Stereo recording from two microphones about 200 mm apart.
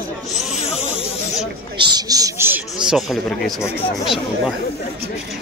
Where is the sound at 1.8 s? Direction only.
20° right (ahead or behind); by 3.5 s centre (ahead or behind).